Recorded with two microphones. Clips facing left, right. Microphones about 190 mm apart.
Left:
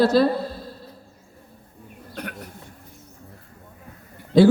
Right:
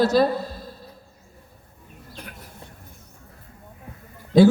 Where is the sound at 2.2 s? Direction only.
65° left (ahead or behind).